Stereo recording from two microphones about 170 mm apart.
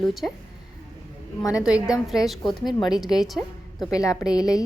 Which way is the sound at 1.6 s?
5° right (ahead or behind).